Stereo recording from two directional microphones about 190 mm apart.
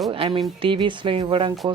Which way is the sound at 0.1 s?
25° right (ahead or behind).